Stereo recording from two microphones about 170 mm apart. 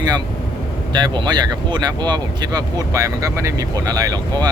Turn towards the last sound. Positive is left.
turn(degrees=-20)  # may be behind; listen again after turning